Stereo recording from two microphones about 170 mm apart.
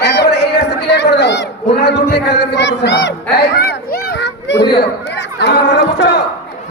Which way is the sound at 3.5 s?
65° left (ahead or behind).